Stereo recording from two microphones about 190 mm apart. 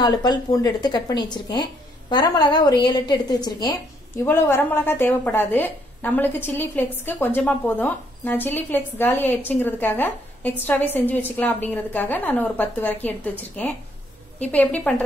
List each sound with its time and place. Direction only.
0.0 s a woman's voice: 20° left (ahead or behind)